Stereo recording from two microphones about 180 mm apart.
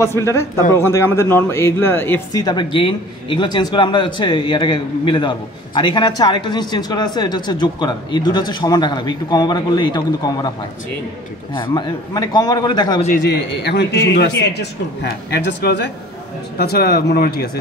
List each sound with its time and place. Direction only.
0.0 s a man's voice: 15° left (ahead or behind)
2.4 s a man's voice: 25° left (ahead or behind)
11.5 s a man's voice: 25° left (ahead or behind)
13.3 s a man's voice: 75° left (ahead or behind)
16.5 s speech: 60° left (ahead or behind)